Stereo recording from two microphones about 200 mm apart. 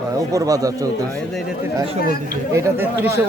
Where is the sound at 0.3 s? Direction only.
15° right (ahead or behind).